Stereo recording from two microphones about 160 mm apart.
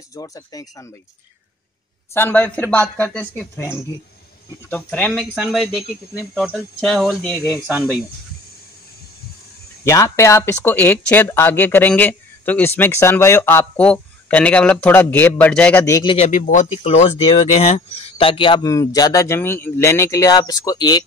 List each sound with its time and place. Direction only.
0.1 s speech: 20° left (ahead or behind)
2.1 s speech: 10° left (ahead or behind)
5.3 s speech: centre (ahead or behind)
9.8 s speech: 15° left (ahead or behind)
15.8 s speech: 20° left (ahead or behind)
16.3 s speech: 55° left (ahead or behind)
16.8 s speech: 40° left (ahead or behind)